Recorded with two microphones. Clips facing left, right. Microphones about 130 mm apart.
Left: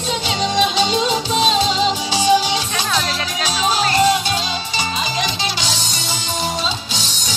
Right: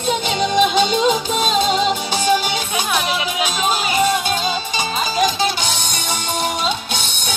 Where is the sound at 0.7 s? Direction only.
50° right (ahead or behind).